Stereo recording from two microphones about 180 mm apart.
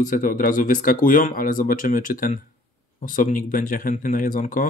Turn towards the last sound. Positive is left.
turn(degrees=45)  # may be behind; listen again after turning